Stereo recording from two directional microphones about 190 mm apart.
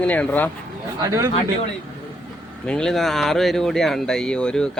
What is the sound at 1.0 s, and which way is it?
Speech, 20° right (ahead or behind).